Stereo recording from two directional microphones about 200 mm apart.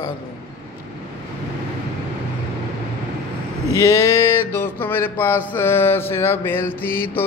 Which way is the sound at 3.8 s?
15° left (ahead or behind).